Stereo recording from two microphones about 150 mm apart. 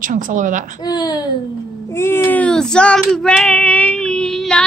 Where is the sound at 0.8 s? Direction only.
25° left (ahead or behind).